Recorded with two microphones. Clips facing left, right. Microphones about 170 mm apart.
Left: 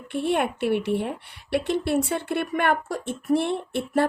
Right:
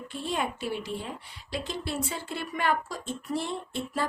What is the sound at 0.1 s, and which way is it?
A woman's voice, 65° left (ahead or behind).